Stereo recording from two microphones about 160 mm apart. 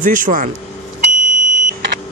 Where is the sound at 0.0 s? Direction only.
55° right (ahead or behind).